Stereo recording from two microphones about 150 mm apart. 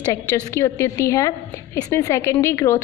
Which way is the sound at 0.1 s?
20° left (ahead or behind).